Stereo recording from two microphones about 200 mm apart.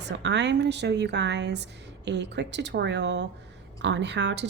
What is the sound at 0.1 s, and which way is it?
Speech, 60° right (ahead or behind).